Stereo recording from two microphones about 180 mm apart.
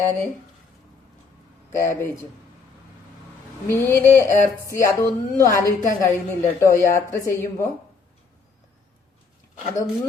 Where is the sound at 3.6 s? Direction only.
15° left (ahead or behind).